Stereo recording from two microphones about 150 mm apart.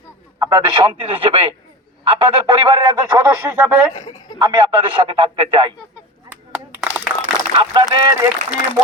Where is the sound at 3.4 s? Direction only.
15° right (ahead or behind).